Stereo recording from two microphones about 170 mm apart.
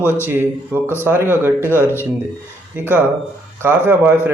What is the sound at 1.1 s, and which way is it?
Speech, 10° right (ahead or behind).